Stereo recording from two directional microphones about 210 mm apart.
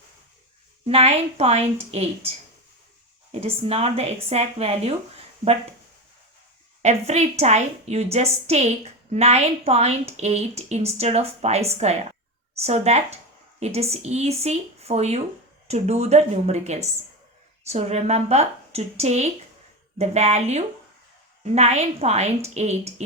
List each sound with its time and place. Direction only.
0.9 s speech: 30° right (ahead or behind)
3.4 s speech: 25° right (ahead or behind)
6.8 s a woman's voice: 30° right (ahead or behind)